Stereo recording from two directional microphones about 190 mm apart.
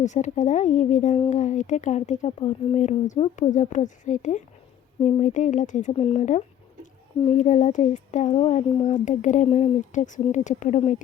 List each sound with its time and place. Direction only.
0.0 s speech: 40° left (ahead or behind)